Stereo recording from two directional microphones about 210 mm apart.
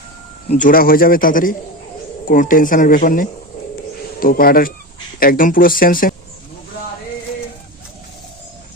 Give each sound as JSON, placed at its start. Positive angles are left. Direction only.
{"t": 0.5, "sound": "a man's voice", "side_deg": 40}